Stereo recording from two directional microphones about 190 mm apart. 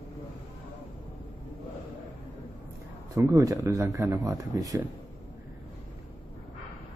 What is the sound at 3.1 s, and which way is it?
Speech, 15° right (ahead or behind).